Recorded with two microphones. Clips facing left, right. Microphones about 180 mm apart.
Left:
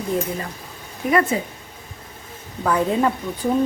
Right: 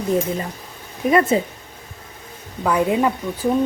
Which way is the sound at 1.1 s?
25° right (ahead or behind).